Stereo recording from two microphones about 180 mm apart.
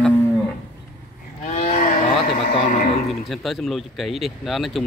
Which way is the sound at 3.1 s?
Centre (ahead or behind).